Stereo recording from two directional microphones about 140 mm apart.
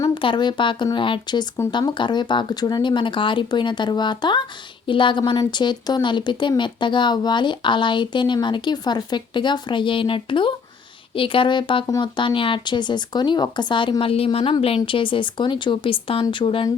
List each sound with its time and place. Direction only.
0.0 s speech: 35° left (ahead or behind)